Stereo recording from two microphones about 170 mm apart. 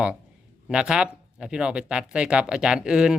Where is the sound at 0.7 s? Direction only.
5° right (ahead or behind).